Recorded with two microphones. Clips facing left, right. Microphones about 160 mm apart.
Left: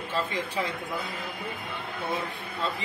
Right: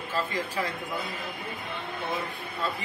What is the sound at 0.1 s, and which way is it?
Speech, 20° left (ahead or behind).